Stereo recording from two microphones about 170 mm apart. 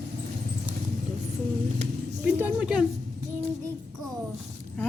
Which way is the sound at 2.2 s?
10° right (ahead or behind).